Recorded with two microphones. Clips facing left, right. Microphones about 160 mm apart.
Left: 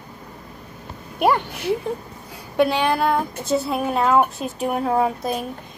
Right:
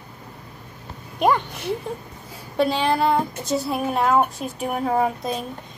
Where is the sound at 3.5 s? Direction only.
Centre (ahead or behind).